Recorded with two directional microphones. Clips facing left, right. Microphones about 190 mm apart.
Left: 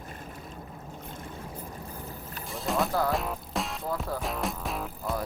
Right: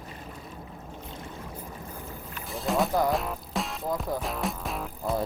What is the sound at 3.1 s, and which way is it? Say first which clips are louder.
Music: right 1 dB; centre (ahead or behind).